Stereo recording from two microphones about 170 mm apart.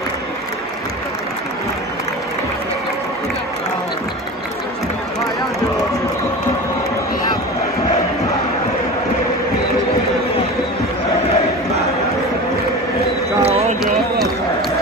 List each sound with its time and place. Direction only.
13.4 s run: 35° right (ahead or behind)